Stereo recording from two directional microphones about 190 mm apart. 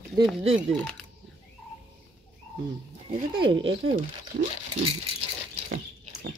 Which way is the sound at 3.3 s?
25° right (ahead or behind).